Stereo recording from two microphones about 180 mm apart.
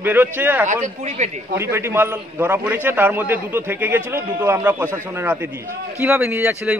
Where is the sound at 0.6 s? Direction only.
45° right (ahead or behind).